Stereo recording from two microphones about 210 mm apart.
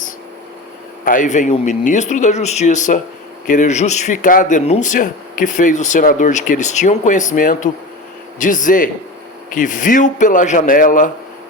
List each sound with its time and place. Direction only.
1.0 s speech: 40° left (ahead or behind)